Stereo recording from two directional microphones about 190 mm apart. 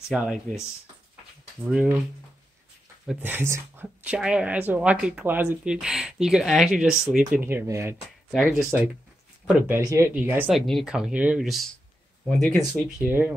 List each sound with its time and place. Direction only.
0.1 s speech: centre (ahead or behind)
1.6 s speech: 10° right (ahead or behind)
3.1 s speech: 10° right (ahead or behind)
8.3 s speech: centre (ahead or behind)
9.7 s speech: 15° right (ahead or behind); by 12.6 s 5° left (ahead or behind)
13.0 s speech: 10° right (ahead or behind)